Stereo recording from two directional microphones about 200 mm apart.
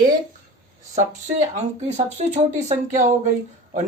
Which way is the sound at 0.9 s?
35° right (ahead or behind).